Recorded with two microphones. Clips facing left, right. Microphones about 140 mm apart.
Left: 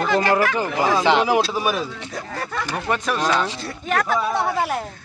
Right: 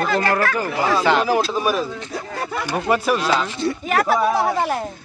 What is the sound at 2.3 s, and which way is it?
Speech, 10° right (ahead or behind).